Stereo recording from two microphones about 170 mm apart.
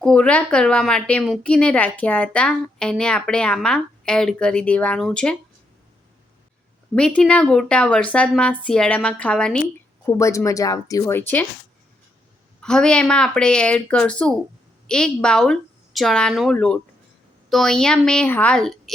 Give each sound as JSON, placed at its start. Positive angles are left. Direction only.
{"t": 0.0, "sound": "a woman's voice", "side_deg": 5}
{"t": 6.9, "sound": "a woman's voice", "side_deg": 5}
{"t": 10.1, "sound": "speech", "side_deg": 15}
{"t": 12.6, "sound": "a woman's voice", "side_deg": 5}